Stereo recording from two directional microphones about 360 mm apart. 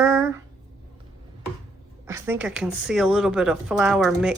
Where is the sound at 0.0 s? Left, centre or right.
Centre.